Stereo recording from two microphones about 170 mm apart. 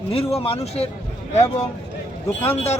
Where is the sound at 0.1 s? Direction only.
35° left (ahead or behind).